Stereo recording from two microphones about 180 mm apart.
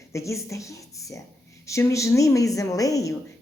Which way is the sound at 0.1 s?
15° left (ahead or behind).